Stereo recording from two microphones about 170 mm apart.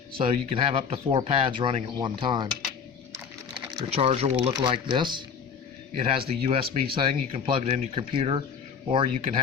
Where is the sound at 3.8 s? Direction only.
35° right (ahead or behind).